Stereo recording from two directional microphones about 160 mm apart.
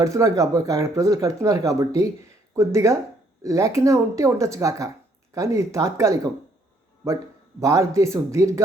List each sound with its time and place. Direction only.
0.0 s speech: 20° right (ahead or behind)
7.6 s speech: 20° right (ahead or behind)